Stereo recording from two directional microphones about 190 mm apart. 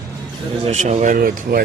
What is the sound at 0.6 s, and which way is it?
Speech, 35° right (ahead or behind).